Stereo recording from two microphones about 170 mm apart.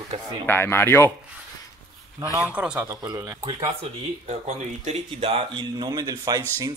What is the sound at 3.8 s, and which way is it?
Speech, 40° right (ahead or behind).